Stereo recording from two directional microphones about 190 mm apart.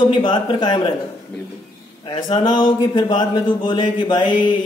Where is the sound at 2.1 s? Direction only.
25° left (ahead or behind).